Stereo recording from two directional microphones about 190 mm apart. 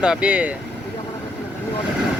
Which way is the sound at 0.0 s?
5° right (ahead or behind).